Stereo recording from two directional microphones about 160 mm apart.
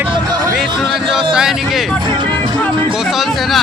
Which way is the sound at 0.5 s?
Centre (ahead or behind).